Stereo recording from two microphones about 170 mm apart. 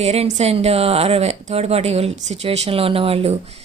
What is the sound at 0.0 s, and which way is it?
A woman's voice, 40° right (ahead or behind).